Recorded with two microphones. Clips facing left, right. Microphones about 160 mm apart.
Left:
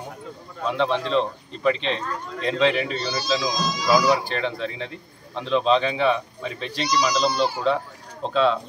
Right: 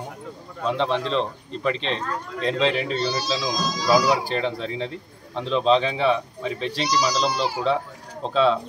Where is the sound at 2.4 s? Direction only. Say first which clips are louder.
Left 1 dB; 35° right (ahead or behind).